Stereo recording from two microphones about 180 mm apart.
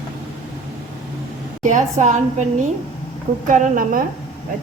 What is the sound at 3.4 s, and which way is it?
Speech, 45° right (ahead or behind).